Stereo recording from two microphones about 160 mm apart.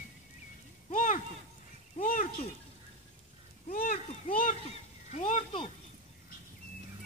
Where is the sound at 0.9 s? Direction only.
55° left (ahead or behind).